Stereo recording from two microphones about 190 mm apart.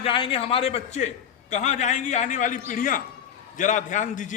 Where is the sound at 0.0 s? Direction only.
30° left (ahead or behind).